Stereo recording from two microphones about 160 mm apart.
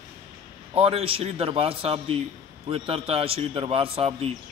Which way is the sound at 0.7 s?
35° right (ahead or behind).